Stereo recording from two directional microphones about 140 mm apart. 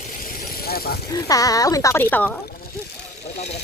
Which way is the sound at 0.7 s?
90° left.